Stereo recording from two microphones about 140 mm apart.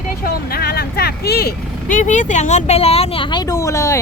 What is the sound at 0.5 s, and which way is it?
Speech, 90° left.